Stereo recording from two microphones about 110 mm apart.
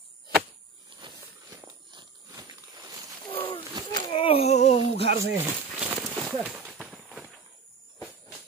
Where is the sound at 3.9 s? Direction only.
45° left (ahead or behind); by 4.7 s 85° left.